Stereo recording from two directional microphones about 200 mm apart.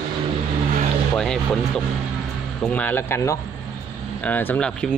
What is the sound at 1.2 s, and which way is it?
Speech, centre (ahead or behind).